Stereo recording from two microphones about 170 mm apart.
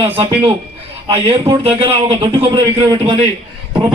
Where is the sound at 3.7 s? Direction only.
30° right (ahead or behind).